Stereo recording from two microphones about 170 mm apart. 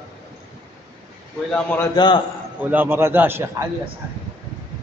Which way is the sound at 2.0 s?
25° left (ahead or behind).